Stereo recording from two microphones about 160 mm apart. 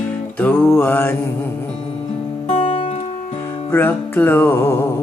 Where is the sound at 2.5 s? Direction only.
50° left (ahead or behind).